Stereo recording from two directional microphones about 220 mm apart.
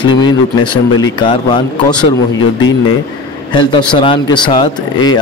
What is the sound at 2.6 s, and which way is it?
Speech, 65° left (ahead or behind).